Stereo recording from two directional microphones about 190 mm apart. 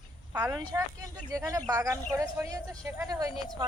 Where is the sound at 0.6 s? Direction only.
25° right (ahead or behind).